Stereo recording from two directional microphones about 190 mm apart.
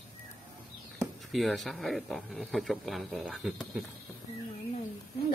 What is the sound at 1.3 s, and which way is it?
A man's voice, centre (ahead or behind).